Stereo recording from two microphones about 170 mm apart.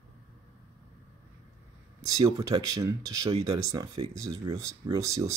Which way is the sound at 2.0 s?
20° right (ahead or behind).